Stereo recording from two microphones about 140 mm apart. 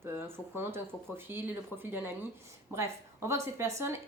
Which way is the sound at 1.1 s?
15° right (ahead or behind).